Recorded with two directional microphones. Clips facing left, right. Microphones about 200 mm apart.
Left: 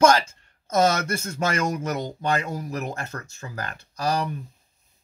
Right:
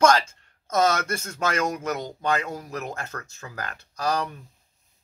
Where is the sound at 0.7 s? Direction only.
Centre (ahead or behind).